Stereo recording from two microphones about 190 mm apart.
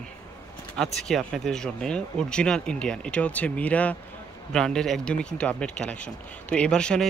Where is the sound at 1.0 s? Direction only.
Centre (ahead or behind).